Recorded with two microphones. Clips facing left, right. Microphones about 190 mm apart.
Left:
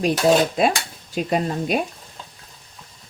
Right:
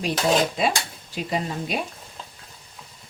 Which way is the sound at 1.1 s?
50° left (ahead or behind).